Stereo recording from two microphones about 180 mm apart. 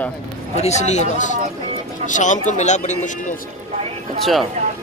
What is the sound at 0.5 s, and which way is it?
Speech, 40° left (ahead or behind).